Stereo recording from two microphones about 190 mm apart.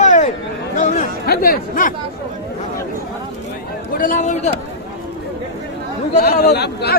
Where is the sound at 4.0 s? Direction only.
40° left (ahead or behind).